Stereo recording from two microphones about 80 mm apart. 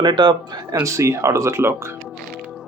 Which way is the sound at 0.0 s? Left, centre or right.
Right.